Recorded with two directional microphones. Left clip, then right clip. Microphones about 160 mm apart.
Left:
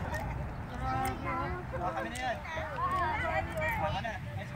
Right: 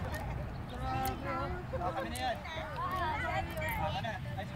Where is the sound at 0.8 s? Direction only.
20° right (ahead or behind).